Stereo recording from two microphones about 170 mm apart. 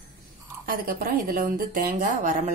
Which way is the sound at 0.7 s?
55° right (ahead or behind).